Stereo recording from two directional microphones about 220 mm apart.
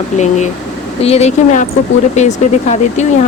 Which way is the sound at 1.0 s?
30° left (ahead or behind).